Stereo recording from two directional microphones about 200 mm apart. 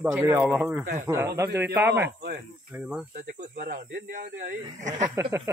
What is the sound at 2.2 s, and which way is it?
Speech, 50° right (ahead or behind).